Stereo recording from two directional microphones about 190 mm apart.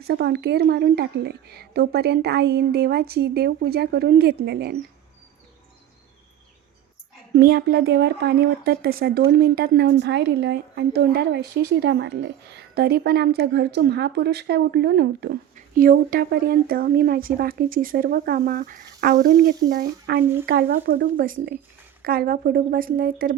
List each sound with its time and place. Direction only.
0.0 s speech: 60° right (ahead or behind)
7.3 s speech: 55° right (ahead or behind)